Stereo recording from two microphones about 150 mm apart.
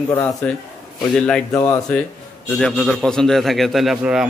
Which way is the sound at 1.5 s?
20° left (ahead or behind).